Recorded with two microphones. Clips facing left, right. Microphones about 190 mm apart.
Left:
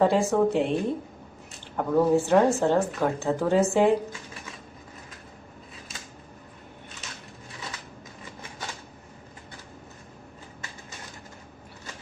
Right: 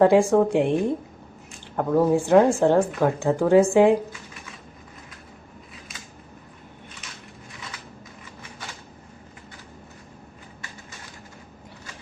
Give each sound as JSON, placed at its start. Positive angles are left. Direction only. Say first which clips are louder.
{"t": 0.0, "sound": "a woman's voice", "louder": "right 5 dB", "side_deg": -15}